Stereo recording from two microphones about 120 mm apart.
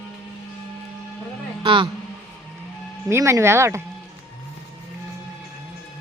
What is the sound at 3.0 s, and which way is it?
Speech, 20° right (ahead or behind).